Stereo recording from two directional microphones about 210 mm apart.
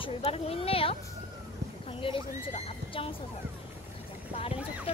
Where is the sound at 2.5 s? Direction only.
25° left (ahead or behind).